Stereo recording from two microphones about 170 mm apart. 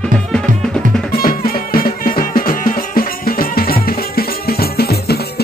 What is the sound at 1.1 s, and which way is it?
Music, 60° left (ahead or behind).